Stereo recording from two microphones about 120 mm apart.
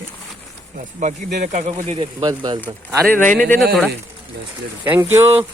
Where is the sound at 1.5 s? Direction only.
80° right.